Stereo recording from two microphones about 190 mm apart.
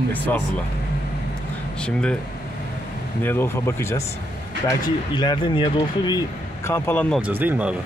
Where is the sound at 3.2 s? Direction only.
10° left (ahead or behind).